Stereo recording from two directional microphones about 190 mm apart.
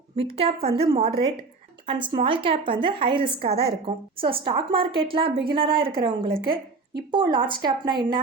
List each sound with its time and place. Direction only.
0.3 s a woman's voice: 30° right (ahead or behind)